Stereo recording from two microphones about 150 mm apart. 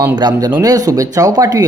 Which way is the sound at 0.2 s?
25° right (ahead or behind).